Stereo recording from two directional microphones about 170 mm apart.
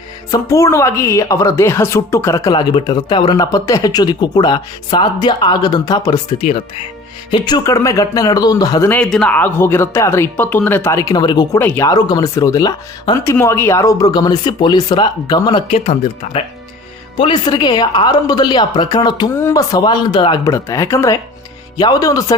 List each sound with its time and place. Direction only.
0.3 s a woman's voice: 15° left (ahead or behind)
9.0 s speech: 5° left (ahead or behind)
11.1 s a woman's voice: 25° left (ahead or behind)
11.6 s a woman's voice: 15° left (ahead or behind)
19.3 s a woman's voice: 15° left (ahead or behind)